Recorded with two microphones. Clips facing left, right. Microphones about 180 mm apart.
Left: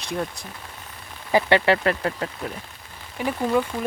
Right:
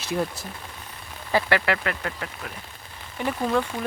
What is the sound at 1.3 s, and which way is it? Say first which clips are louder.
Speech: left 4 dB; 25° left (ahead or behind).